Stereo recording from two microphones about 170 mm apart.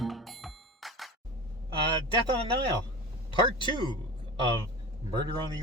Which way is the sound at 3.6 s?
25° right (ahead or behind).